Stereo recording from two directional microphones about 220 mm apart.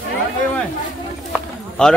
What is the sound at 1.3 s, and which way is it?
Run, 5° left (ahead or behind).